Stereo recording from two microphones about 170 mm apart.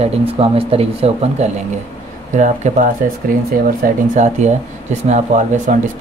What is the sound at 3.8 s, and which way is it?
Speech, 45° right (ahead or behind).